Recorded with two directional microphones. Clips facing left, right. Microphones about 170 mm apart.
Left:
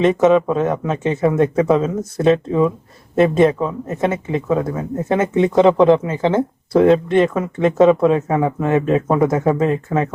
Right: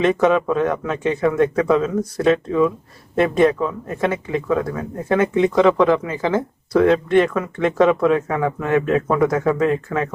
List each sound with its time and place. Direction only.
0.0 s speech: 25° left (ahead or behind)